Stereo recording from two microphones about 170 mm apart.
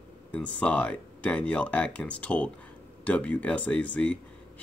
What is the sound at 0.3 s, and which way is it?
Speech, 10° left (ahead or behind).